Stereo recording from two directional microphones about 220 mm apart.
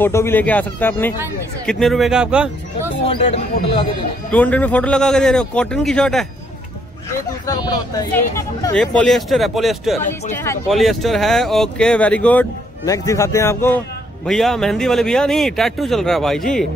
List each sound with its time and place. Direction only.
0.0 s speech: 10° left (ahead or behind); by 2.9 s 5° right (ahead or behind)
3.1 s speech: 30° left (ahead or behind)
4.3 s speech: 5° left (ahead or behind)
7.1 s speech: 15° left (ahead or behind); by 9.9 s centre (ahead or behind)
10.3 s speech: 10° left (ahead or behind)
10.7 s speech: centre (ahead or behind)